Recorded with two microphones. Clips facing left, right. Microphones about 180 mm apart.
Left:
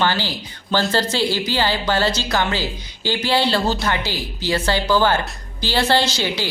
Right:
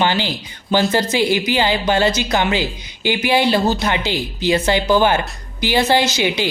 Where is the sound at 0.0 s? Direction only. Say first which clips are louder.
Right 2 dB; 20° right (ahead or behind).